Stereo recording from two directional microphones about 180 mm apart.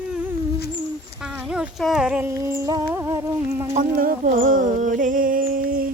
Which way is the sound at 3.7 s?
50° right (ahead or behind).